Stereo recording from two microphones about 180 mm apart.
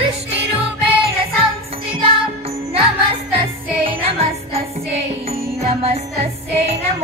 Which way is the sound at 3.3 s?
30° right (ahead or behind).